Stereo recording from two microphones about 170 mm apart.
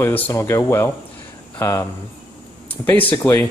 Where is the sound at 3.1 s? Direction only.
15° left (ahead or behind).